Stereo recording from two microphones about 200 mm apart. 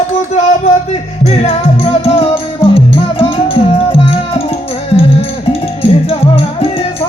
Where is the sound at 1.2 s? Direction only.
30° left (ahead or behind).